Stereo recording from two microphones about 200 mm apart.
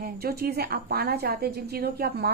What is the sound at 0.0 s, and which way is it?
A woman's voice, 50° right (ahead or behind).